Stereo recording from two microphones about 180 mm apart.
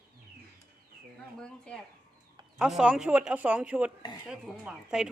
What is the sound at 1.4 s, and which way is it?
A woman's voice, 5° left (ahead or behind).